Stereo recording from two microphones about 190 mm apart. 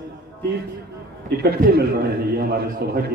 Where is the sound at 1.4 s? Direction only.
55° right (ahead or behind).